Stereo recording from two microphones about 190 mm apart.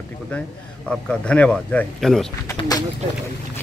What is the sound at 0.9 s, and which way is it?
Speech, 5° left (ahead or behind).